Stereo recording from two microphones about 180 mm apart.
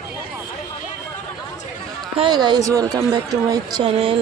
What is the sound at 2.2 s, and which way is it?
Speech, 25° right (ahead or behind).